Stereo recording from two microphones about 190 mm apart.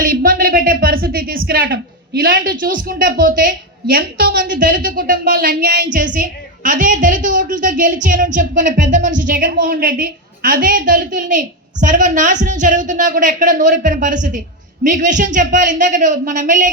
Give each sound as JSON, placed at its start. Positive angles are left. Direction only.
{"t": 0.0, "sound": "a woman's voice", "side_deg": -45}